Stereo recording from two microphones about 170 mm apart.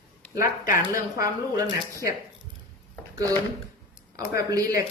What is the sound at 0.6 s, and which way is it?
Speech, 55° left (ahead or behind).